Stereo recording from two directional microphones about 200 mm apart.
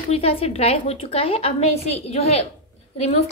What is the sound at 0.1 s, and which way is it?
A woman's voice, 30° left (ahead or behind).